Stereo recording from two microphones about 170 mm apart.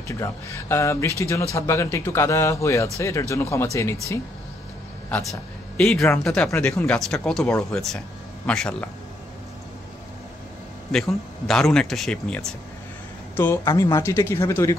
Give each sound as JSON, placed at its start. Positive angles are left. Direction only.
{"t": 0.2, "sound": "speech", "side_deg": 15}
{"t": 5.1, "sound": "speech", "side_deg": 5}
{"t": 10.9, "sound": "speech", "side_deg": 0}
{"t": 13.4, "sound": "speech", "side_deg": 15}